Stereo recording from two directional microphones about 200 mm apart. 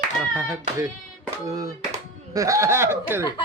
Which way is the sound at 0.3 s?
10° right (ahead or behind).